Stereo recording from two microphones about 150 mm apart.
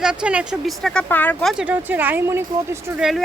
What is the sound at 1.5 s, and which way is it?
Speech, 10° right (ahead or behind).